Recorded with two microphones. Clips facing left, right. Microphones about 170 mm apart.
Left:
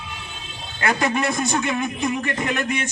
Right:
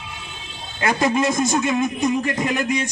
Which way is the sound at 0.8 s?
20° right (ahead or behind).